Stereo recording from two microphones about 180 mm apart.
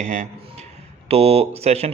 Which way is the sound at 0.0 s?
40° right (ahead or behind).